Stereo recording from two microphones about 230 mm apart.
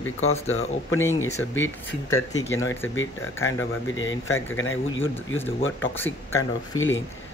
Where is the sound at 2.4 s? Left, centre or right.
Left.